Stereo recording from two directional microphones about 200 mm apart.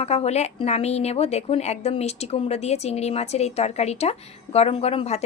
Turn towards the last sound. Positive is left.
turn(degrees=30)  # may be behind; listen again after turning